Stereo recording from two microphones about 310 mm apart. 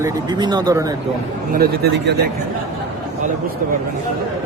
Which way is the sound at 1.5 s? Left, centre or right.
Right.